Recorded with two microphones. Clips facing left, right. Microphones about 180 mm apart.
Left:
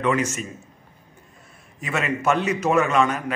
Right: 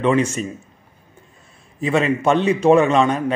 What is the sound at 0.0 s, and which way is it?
Speech, 30° right (ahead or behind).